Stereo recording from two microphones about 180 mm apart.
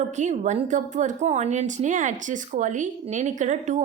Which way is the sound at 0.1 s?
40° right (ahead or behind).